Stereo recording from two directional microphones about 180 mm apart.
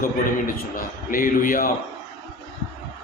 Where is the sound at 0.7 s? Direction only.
50° left (ahead or behind).